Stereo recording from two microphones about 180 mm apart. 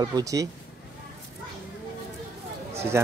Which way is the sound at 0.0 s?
20° right (ahead or behind).